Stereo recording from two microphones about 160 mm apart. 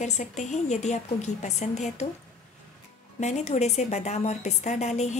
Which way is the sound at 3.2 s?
45° left (ahead or behind).